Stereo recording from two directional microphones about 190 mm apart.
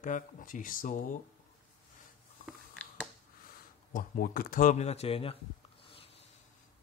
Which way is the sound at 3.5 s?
50° left (ahead or behind).